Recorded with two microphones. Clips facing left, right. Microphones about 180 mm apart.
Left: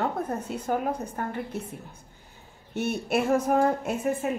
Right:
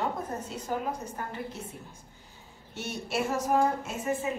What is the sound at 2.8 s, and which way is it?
A woman's voice, 60° left (ahead or behind).